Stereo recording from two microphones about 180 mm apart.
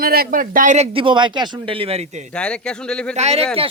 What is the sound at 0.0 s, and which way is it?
Speech, 55° right (ahead or behind).